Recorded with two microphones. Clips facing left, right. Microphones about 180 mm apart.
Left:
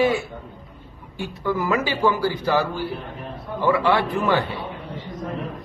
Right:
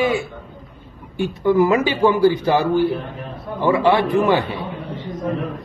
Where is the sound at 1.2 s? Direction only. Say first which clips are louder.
Right 9 dB; 20° right (ahead or behind).